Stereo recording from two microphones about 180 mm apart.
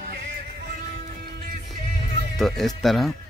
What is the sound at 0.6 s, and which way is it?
Music, 50° right (ahead or behind).